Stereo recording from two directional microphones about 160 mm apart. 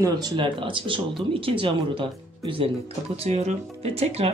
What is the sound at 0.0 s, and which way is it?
Speech, 30° right (ahead or behind).